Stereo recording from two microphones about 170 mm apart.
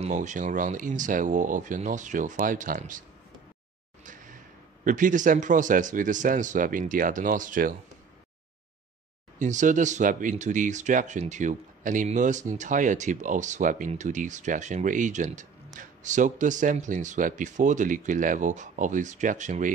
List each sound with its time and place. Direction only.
0.0 s speech: 45° right (ahead or behind)
4.0 s a sound: 50° right (ahead or behind)
4.8 s speech: 50° right (ahead or behind)
9.4 s speech: 45° right (ahead or behind)